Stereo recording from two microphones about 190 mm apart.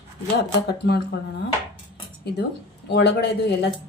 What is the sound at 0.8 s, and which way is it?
Speech, 60° left (ahead or behind).